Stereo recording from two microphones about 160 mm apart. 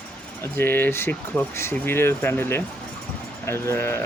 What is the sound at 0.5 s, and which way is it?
Speech, 15° left (ahead or behind).